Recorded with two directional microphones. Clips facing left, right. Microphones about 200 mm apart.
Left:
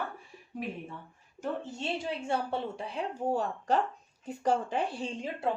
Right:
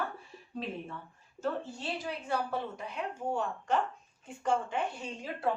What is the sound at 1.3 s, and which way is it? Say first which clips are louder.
Speech: even; 20° left (ahead or behind).